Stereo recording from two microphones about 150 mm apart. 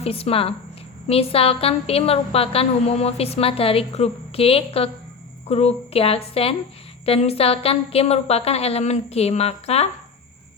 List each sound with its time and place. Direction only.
0.0 s a woman's voice: 40° left (ahead or behind)